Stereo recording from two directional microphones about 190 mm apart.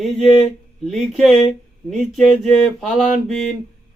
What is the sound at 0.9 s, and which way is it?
Speech, centre (ahead or behind).